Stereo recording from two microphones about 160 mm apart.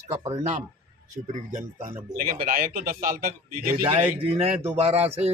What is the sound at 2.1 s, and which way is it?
A man's voice, 65° right (ahead or behind).